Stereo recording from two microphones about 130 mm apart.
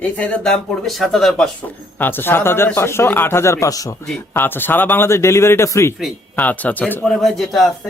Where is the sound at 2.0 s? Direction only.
15° left (ahead or behind).